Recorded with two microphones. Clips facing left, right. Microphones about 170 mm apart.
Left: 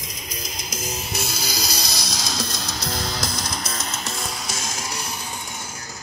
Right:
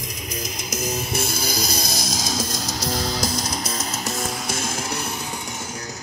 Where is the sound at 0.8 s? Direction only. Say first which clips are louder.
Right 5 dB; 55° right (ahead or behind); by 4.1 s 35° right (ahead or behind).